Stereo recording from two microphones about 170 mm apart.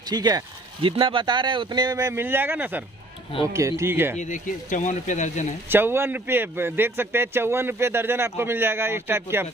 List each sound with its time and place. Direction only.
0.0 s a man's voice: 25° right (ahead or behind)
4.2 s speech: 45° left (ahead or behind)
5.7 s a man's voice: 15° right (ahead or behind)